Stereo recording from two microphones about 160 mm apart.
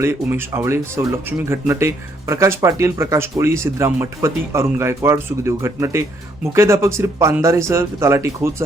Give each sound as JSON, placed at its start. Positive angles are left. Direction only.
{"t": 0.0, "sound": "speech", "side_deg": -15}